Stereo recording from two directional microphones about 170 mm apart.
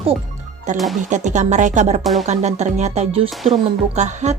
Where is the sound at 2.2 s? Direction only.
45° right (ahead or behind).